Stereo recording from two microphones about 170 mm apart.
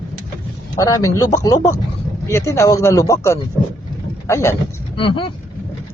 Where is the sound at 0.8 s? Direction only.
20° left (ahead or behind).